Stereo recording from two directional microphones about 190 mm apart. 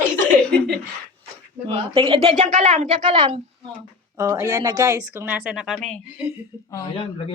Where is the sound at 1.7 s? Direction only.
30° right (ahead or behind).